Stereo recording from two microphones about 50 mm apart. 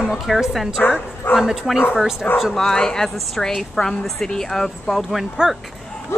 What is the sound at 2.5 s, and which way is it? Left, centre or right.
A woman's voice, centre.